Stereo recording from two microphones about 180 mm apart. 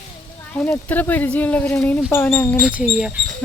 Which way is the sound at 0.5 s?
10° left (ahead or behind).